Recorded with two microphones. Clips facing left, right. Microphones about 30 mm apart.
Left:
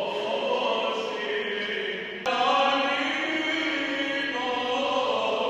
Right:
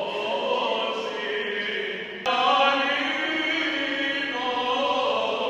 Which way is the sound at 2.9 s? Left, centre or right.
Right.